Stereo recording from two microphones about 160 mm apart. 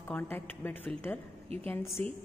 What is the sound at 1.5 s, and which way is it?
Speech, 40° right (ahead or behind).